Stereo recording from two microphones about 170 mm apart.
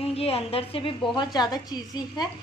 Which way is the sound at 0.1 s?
35° left (ahead or behind).